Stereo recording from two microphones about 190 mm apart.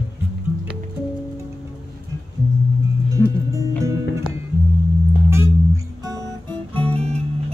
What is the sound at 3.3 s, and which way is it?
Music, 15° right (ahead or behind).